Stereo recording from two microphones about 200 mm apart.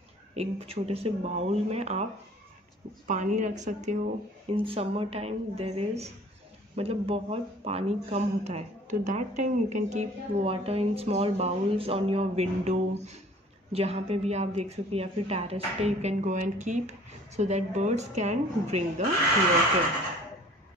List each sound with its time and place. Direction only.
0.4 s speech: 30° right (ahead or behind)
3.1 s speech: 35° right (ahead or behind)